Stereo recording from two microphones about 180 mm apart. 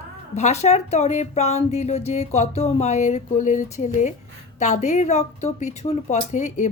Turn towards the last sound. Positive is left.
turn(degrees=40)  # may be behind; listen again after turning